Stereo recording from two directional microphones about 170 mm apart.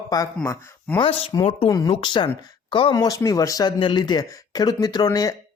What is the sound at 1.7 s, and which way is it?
Speech, 20° left (ahead or behind).